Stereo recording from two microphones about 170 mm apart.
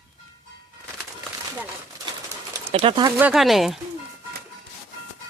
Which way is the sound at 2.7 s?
30° right (ahead or behind).